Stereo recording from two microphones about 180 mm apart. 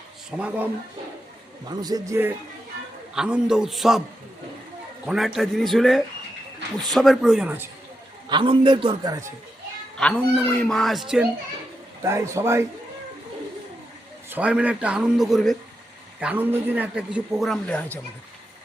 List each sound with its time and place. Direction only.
0.3 s a man's voice: 5° right (ahead or behind)
1.6 s a man's voice: 20° right (ahead or behind)
3.2 s a man's voice: 5° right (ahead or behind)
5.0 s a man's voice: centre (ahead or behind)
8.3 s a man's voice: 25° right (ahead or behind)
10.0 s a man's voice: 5° left (ahead or behind)
12.0 s a man's voice: 15° right (ahead or behind)
14.3 s a man's voice: 10° right (ahead or behind)
16.2 s a man's voice: 10° right (ahead or behind); by 18.0 s 10° left (ahead or behind)